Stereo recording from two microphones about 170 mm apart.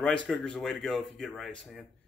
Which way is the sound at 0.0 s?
5° left (ahead or behind).